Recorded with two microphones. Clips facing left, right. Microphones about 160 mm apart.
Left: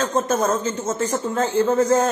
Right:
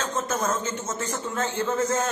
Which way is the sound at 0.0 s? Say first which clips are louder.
Left 7 dB; 35° left (ahead or behind).